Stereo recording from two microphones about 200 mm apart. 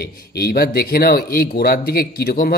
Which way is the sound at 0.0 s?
50° left (ahead or behind).